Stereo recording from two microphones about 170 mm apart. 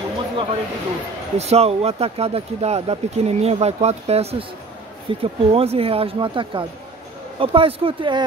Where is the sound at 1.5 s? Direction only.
35° right (ahead or behind).